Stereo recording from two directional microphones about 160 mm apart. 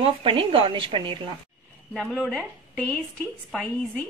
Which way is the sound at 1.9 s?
Centre (ahead or behind).